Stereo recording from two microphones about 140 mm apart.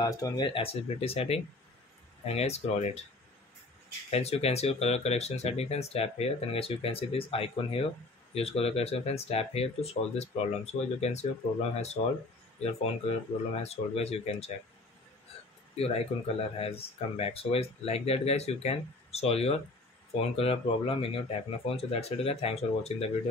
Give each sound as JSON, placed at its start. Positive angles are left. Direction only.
{"t": 0.0, "sound": "speech", "side_deg": 25}
{"t": 0.5, "sound": "speech", "side_deg": 40}
{"t": 4.1, "sound": "speech", "side_deg": 50}
{"t": 15.7, "sound": "speech", "side_deg": 45}